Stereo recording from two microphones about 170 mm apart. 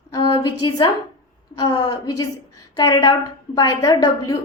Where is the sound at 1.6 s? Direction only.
20° left (ahead or behind).